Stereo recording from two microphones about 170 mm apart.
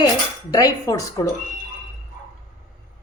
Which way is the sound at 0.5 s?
20° left (ahead or behind).